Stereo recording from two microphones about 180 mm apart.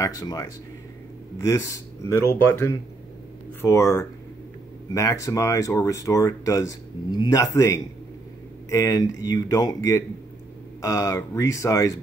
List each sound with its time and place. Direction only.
0.0 s speech: 20° left (ahead or behind)